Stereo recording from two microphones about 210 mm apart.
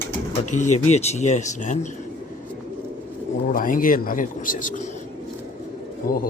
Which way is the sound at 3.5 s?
40° left (ahead or behind).